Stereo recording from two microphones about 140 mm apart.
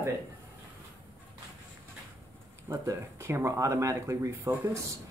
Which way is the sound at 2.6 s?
20° right (ahead or behind).